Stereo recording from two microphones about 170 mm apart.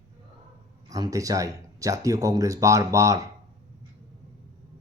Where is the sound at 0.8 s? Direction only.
20° right (ahead or behind).